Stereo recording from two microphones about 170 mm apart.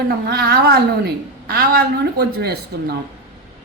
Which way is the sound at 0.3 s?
65° right (ahead or behind).